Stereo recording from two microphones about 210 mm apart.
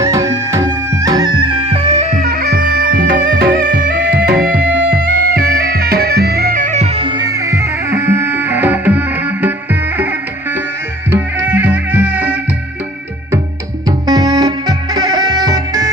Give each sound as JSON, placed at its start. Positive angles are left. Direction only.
{"t": 0.0, "sound": "music", "side_deg": -15}
{"t": 2.1, "sound": "music", "side_deg": -45}
{"t": 3.9, "sound": "music", "side_deg": -55}
{"t": 13.8, "sound": "music", "side_deg": -20}